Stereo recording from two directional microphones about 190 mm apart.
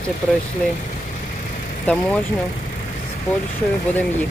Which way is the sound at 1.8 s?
5° left (ahead or behind).